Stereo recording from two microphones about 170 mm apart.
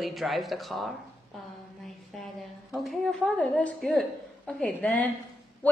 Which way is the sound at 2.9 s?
5° left (ahead or behind).